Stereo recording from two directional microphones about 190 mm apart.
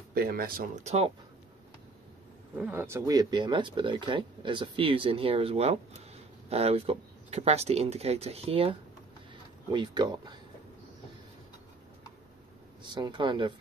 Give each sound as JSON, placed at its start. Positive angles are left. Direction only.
{"t": 0.1, "sound": "speech", "side_deg": -50}
{"t": 2.5, "sound": "speech", "side_deg": -10}
{"t": 12.8, "sound": "speech", "side_deg": -25}